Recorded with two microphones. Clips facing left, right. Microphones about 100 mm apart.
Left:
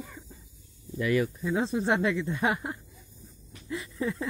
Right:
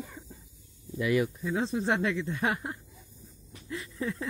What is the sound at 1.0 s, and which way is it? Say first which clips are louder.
Speech: left 1 dB; 15° right (ahead or behind).